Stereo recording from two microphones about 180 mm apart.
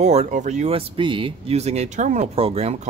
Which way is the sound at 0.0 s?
40° right (ahead or behind).